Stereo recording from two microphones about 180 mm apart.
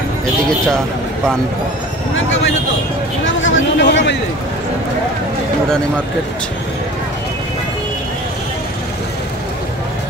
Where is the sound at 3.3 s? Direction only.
90° left; by 4.2 s 75° left (ahead or behind).